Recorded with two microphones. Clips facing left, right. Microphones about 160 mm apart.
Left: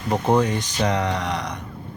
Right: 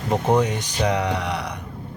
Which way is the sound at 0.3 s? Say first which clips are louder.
Even; 15° right (ahead or behind).